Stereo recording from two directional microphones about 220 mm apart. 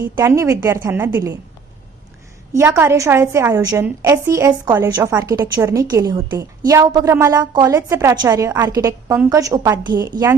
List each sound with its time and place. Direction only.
0.0 s a woman's voice: 15° right (ahead or behind)
2.5 s a woman's voice: 10° right (ahead or behind)